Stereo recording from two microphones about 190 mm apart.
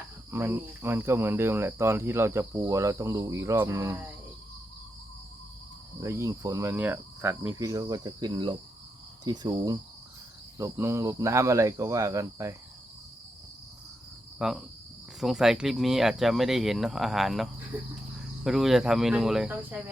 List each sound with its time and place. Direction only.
0.3 s speech: 15° right (ahead or behind)
6.0 s speech: 15° right (ahead or behind)
9.2 s cricket: 20° right (ahead or behind)
10.6 s speech: 15° right (ahead or behind)
14.3 s cricket: centre (ahead or behind)
15.2 s speech: centre (ahead or behind)